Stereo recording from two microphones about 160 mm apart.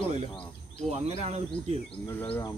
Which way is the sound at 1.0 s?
40° right (ahead or behind).